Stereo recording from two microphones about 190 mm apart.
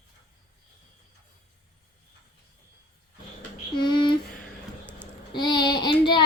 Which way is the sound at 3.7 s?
25° left (ahead or behind).